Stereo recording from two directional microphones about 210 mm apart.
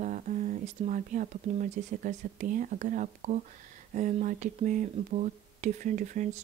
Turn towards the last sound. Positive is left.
turn(degrees=-35)  # may be behind; listen again after turning